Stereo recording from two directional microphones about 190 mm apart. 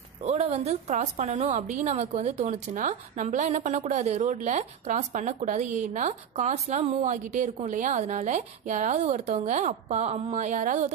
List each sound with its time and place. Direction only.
0.2 s a woman's voice: 35° right (ahead or behind)